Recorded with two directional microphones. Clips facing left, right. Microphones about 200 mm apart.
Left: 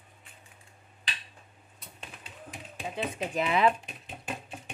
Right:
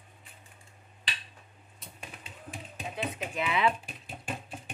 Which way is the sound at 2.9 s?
30° left (ahead or behind).